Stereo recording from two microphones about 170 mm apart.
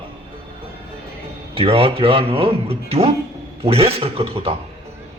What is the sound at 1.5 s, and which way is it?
Speech, 35° right (ahead or behind).